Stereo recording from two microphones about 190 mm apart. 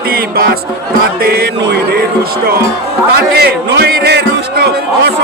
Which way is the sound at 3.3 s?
60° right (ahead or behind).